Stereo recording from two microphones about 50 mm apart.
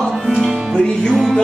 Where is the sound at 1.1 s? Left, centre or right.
Centre.